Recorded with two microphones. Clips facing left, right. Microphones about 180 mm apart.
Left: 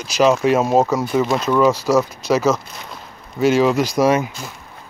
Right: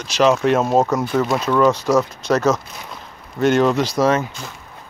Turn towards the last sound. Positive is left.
turn(degrees=10)  # may be behind; listen again after turning